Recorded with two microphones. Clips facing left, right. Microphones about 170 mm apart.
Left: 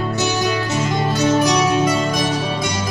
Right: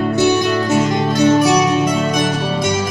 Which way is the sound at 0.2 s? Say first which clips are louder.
Right 6 dB; 60° right (ahead or behind).